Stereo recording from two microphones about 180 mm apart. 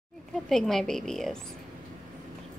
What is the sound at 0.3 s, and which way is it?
A woman's voice, centre (ahead or behind).